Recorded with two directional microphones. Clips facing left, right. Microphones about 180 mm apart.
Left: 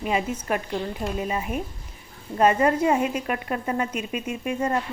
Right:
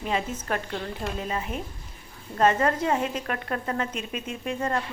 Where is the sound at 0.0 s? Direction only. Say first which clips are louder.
Left 3 dB; 10° left (ahead or behind).